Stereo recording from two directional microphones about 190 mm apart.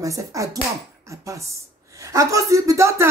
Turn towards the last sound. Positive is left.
turn(degrees=-15)  # may be behind; listen again after turning